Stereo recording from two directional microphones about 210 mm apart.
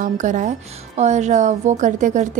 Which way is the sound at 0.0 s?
35° right (ahead or behind).